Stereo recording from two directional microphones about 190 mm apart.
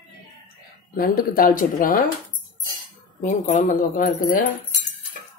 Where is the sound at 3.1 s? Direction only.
40° left (ahead or behind).